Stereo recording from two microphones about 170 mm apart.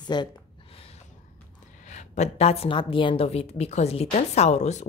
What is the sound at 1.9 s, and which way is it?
A woman's voice, 45° left (ahead or behind).